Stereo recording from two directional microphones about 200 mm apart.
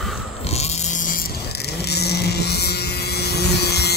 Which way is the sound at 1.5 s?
55° left (ahead or behind).